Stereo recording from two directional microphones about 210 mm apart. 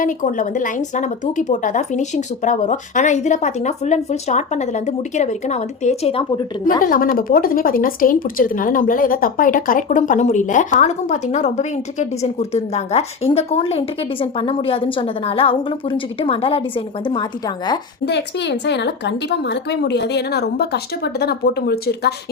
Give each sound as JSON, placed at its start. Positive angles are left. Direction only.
{"t": 0.0, "sound": "speech", "side_deg": 40}
{"t": 6.8, "sound": "speech", "side_deg": 40}
{"t": 18.0, "sound": "speech", "side_deg": 55}